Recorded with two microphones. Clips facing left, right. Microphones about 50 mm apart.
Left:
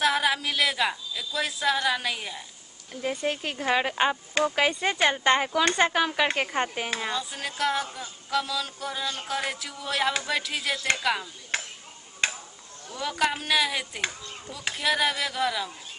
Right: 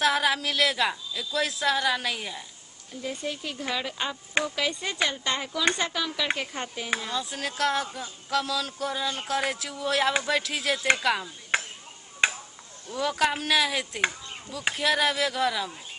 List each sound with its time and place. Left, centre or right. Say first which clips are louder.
0.0 s a woman's voice: even; centre
2.9 s speech: left 4 dB; left
7.2 s a woman's voice: right 1 dB; centre
11.5 s a sound: right 4 dB; centre
12.2 s tick-tock: right 3 dB; centre
12.9 s a woman's voice: right 1 dB; centre